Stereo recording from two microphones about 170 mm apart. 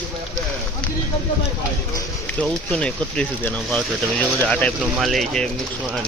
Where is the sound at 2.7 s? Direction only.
5° left (ahead or behind).